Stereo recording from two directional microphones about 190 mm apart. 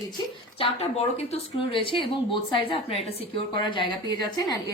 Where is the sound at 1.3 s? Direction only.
30° left (ahead or behind).